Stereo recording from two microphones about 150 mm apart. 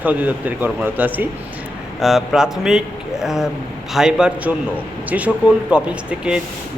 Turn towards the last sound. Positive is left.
turn(degrees=-5)  # may be behind; listen again after turning